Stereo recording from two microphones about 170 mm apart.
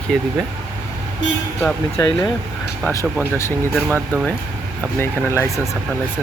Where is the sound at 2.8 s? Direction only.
15° left (ahead or behind).